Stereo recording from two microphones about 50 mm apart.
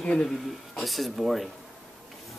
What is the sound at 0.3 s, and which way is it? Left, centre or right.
Speech, centre.